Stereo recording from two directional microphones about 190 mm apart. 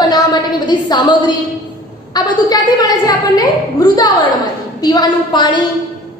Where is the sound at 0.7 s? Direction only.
20° left (ahead or behind).